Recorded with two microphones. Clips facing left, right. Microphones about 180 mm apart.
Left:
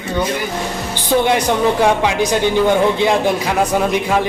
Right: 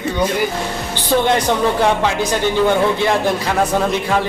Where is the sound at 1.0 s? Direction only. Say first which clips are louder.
Left 1 dB; 10° left (ahead or behind).